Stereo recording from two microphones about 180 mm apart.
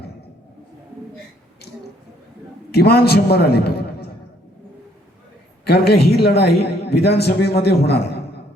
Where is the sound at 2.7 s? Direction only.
60° left (ahead or behind).